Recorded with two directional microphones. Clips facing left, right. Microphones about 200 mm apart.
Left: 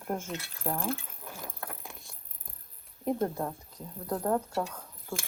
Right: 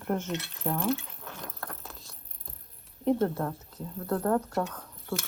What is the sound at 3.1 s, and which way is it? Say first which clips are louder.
Speech: right 4 dB; 15° left (ahead or behind).